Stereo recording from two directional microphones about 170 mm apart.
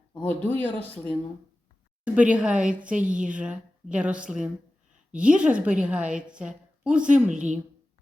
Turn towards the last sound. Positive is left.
turn(degrees=-45)  # may be behind; listen again after turning